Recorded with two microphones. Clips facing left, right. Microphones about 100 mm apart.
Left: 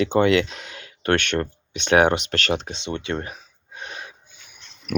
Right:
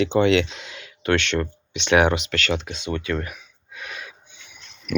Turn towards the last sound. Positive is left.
turn(degrees=45)  # may be behind; listen again after turning